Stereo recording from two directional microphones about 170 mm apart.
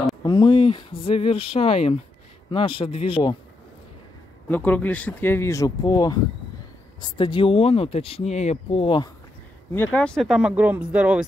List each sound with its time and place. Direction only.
0.2 s speech: 25° left (ahead or behind)
4.5 s speech: 10° left (ahead or behind); by 9.1 s 30° left (ahead or behind)
9.7 s speech: 10° left (ahead or behind); by 11.2 s 10° right (ahead or behind)